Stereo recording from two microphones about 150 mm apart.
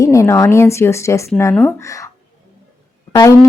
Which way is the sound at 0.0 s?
20° left (ahead or behind).